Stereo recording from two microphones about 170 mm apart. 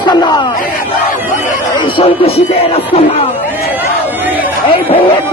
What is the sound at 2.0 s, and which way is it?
Speech, 35° left (ahead or behind).